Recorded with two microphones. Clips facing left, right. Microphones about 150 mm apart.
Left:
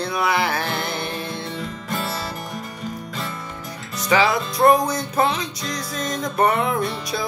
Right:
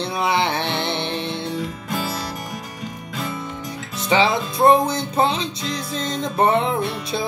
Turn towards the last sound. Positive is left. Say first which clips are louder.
# right 1 dB
turn(degrees=-25)  # may be behind; listen again after turning